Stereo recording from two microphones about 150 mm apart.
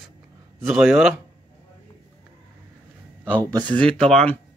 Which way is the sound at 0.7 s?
5° right (ahead or behind).